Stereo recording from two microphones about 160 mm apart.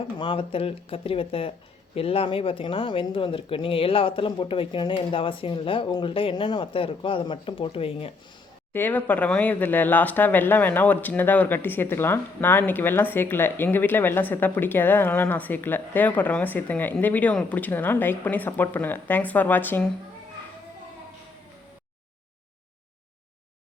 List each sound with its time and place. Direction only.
0.2 s speech: 35° left (ahead or behind)
8.7 s speech: 10° left (ahead or behind)